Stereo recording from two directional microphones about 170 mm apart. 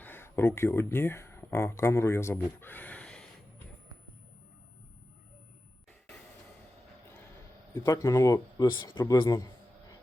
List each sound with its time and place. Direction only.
0.0 s speech: 15° left (ahead or behind)
7.7 s speech: 20° left (ahead or behind)